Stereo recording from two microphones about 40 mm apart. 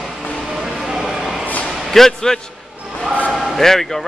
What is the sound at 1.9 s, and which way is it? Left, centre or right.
A man's voice, centre.